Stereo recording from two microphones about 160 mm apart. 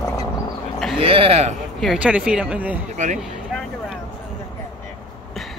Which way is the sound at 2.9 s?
50° right (ahead or behind).